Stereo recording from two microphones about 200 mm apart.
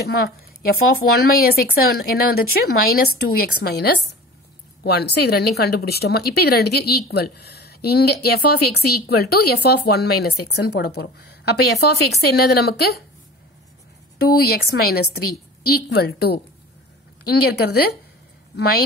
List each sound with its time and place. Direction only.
0.0 s a woman's voice: 50° left (ahead or behind)
14.2 s a woman's voice: 50° left (ahead or behind)